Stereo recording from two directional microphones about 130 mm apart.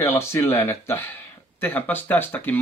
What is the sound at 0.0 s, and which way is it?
Speech, 20° left (ahead or behind).